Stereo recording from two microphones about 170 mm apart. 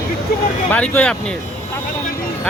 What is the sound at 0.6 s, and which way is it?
Speech, 10° left (ahead or behind).